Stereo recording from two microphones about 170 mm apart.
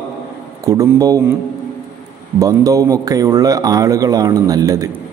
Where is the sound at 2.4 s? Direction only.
20° right (ahead or behind).